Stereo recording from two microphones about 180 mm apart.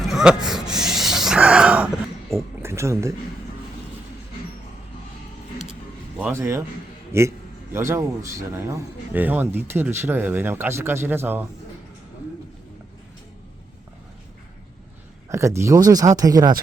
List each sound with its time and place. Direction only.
0.1 s a sound: 5° right (ahead or behind)
2.3 s speech: 15° right (ahead or behind)
6.1 s a man's voice: 10° right (ahead or behind)
15.3 s speech: 15° right (ahead or behind)